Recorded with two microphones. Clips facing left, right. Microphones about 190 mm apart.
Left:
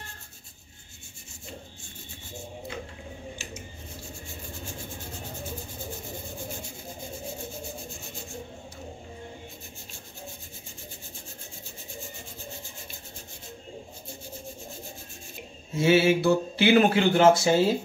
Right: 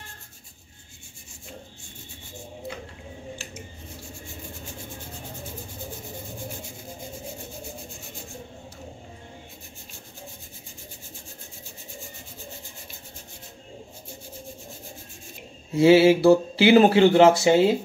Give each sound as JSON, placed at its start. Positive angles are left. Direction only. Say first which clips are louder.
{"t": 15.7, "sound": "speech", "louder": "right 6 dB", "side_deg": -30}